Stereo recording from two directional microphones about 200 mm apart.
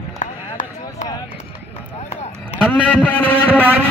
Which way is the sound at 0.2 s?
40° left (ahead or behind).